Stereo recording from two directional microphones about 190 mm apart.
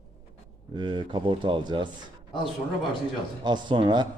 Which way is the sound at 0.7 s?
25° right (ahead or behind).